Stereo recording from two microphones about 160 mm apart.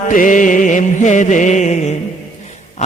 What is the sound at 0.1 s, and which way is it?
Mantra, 55° left (ahead or behind).